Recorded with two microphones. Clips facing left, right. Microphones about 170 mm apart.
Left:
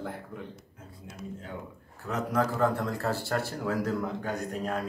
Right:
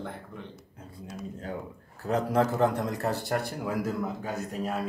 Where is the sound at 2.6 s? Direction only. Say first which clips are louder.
Right 1 dB; 20° right (ahead or behind); by 4.8 s 5° right (ahead or behind).